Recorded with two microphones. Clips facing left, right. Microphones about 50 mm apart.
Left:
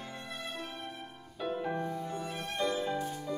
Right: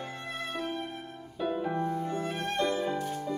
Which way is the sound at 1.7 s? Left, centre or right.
Right.